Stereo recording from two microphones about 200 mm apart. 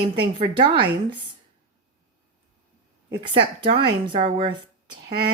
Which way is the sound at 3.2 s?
25° right (ahead or behind).